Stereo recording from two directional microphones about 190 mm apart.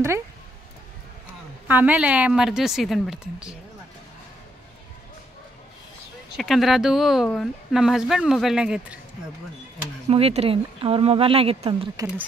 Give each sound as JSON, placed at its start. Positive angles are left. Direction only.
{"t": 1.7, "sound": "speech", "side_deg": -10}
{"t": 6.3, "sound": "speech", "side_deg": 0}
{"t": 10.0, "sound": "speech", "side_deg": -30}